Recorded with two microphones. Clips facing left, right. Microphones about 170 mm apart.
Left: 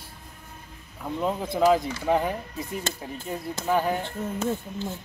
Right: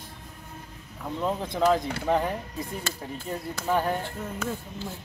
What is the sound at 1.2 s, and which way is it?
Speech, 5° left (ahead or behind).